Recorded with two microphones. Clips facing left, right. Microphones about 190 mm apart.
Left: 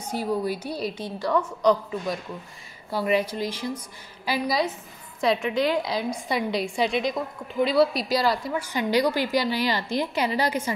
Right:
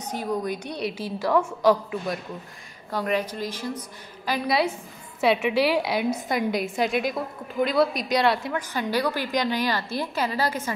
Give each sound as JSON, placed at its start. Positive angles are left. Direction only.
{"t": 0.0, "sound": "a woman's voice", "side_deg": 10}
{"t": 0.9, "sound": "a woman's voice", "side_deg": -5}
{"t": 2.9, "sound": "a woman's voice", "side_deg": 10}
{"t": 4.5, "sound": "a woman's voice", "side_deg": -5}
{"t": 6.2, "sound": "a woman's voice", "side_deg": -45}
{"t": 6.9, "sound": "a woman's voice", "side_deg": -5}
{"t": 8.5, "sound": "a woman's voice", "side_deg": 15}